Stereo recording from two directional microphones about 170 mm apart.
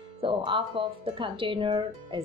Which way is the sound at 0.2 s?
30° right (ahead or behind).